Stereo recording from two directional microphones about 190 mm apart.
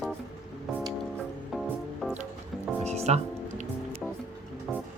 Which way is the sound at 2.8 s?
35° right (ahead or behind).